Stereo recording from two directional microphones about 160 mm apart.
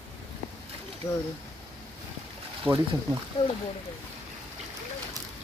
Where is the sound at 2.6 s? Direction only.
15° right (ahead or behind).